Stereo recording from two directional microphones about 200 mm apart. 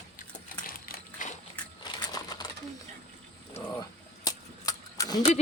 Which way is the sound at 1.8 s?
20° left (ahead or behind).